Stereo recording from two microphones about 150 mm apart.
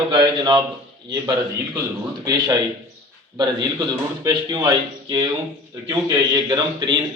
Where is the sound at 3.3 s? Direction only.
25° right (ahead or behind).